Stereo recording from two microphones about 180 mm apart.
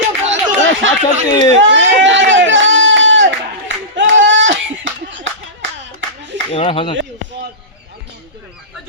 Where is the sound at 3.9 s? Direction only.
90° right.